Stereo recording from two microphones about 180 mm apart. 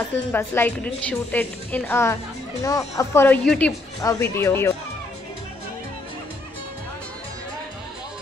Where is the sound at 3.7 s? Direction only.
20° left (ahead or behind).